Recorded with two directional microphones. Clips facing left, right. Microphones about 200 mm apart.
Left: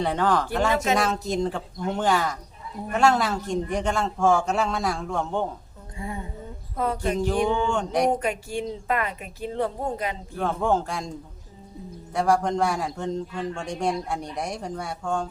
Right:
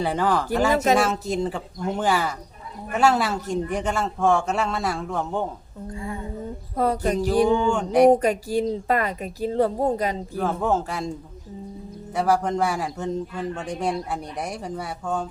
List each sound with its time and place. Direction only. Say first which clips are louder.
0.0 s a man's voice: even; 5° right (ahead or behind)
5.9 s a sound: right 2 dB; 20° left (ahead or behind)
6.7 s a woman's voice: right 3 dB; 40° right (ahead or behind)
7.6 s speech: right 6 dB; 5° right (ahead or behind)
8.1 s a woman's voice: right 6 dB; 40° right (ahead or behind)
10.3 s a man's voice: left 1 dB; 5° right (ahead or behind)
12.1 s a man's voice: even; 5° right (ahead or behind)